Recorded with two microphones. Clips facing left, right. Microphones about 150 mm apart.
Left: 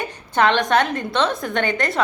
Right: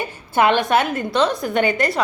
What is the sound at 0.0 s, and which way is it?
A woman's voice, 10° right (ahead or behind).